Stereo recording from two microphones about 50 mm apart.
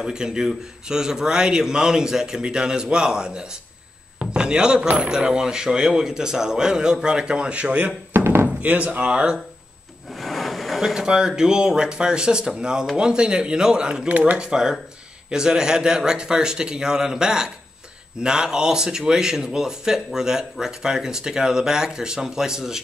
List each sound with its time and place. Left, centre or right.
0.0 s a man's voice: centre
8.1 s a sound: right
8.6 s speech: right
10.1 s wood: centre
10.8 s a man's voice: centre
14.1 s speech: right
14.4 s a man's voice: centre